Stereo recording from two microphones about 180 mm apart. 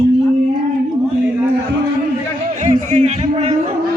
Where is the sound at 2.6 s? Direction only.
40° right (ahead or behind).